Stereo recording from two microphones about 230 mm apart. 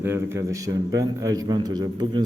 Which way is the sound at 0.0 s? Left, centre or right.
Centre.